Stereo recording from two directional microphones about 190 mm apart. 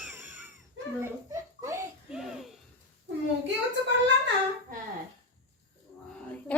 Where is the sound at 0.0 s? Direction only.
10° right (ahead or behind).